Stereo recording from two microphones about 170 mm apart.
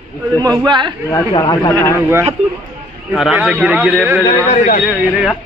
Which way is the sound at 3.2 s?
5° right (ahead or behind).